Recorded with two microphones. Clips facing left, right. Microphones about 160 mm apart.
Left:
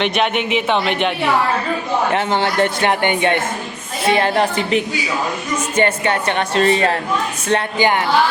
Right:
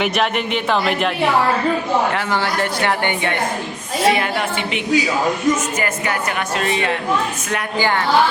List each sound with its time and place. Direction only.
0.0 s a man's voice: centre (ahead or behind)
2.1 s speech: 20° left (ahead or behind)
4.1 s speech: 35° left (ahead or behind)
7.8 s speech: 20° left (ahead or behind)